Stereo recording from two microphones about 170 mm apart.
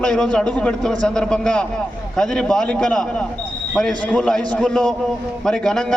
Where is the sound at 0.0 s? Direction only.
5° left (ahead or behind).